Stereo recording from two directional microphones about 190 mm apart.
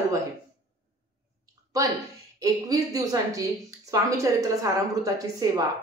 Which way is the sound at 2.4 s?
20° right (ahead or behind).